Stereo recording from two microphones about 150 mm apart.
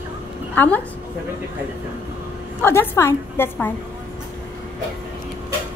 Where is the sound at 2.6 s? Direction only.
15° left (ahead or behind).